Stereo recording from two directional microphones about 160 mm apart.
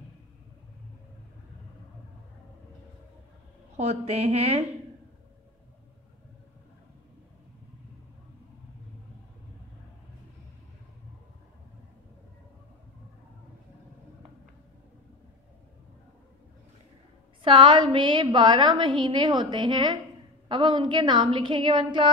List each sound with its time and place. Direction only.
3.7 s a woman's voice: 40° right (ahead or behind)
17.4 s a woman's voice: 30° right (ahead or behind)